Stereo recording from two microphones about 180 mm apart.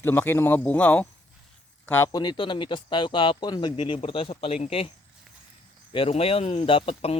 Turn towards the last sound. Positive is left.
turn(degrees=30)  # may be behind; listen again after turning